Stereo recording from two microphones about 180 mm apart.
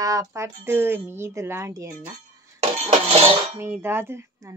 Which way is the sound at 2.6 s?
35° right (ahead or behind).